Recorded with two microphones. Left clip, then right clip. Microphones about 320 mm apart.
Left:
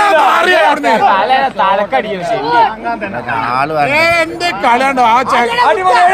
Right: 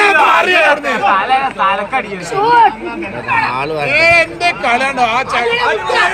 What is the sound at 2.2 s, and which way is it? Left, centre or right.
Speech, centre.